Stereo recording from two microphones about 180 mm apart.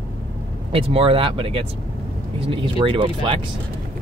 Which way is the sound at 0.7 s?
30° right (ahead or behind).